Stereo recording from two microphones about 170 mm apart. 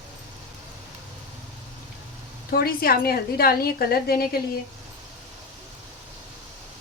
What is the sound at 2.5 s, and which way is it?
A woman's voice, 65° left (ahead or behind).